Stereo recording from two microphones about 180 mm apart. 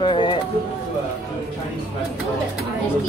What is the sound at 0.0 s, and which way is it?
Speech, 25° left (ahead or behind).